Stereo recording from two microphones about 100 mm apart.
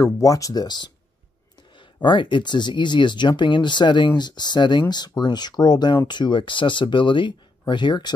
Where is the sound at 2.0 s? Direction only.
55° left (ahead or behind).